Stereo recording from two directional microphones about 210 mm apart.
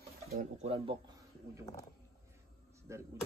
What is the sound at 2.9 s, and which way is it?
Speech, 15° right (ahead or behind).